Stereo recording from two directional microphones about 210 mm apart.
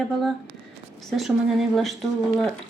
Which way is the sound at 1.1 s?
Centre (ahead or behind).